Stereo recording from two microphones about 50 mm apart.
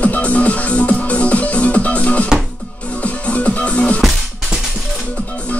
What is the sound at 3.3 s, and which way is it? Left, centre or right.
Music, left.